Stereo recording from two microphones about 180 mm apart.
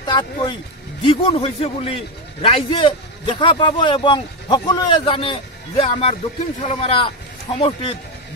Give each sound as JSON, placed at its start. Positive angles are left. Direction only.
{"t": 0.0, "sound": "a man's voice", "side_deg": 25}